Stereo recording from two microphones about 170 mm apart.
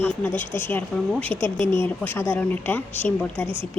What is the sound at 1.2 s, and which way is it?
Speech, 30° right (ahead or behind).